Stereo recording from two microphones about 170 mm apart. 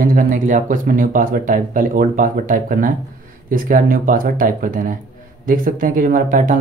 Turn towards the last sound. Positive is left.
turn(degrees=-50)  # may be behind; listen again after turning